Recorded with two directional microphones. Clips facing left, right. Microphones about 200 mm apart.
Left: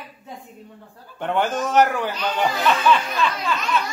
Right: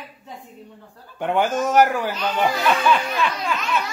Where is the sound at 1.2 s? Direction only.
10° right (ahead or behind).